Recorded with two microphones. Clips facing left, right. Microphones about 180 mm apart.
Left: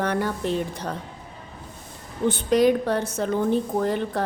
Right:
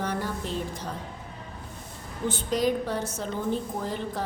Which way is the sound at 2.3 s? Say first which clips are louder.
Left 7 dB; 65° left (ahead or behind).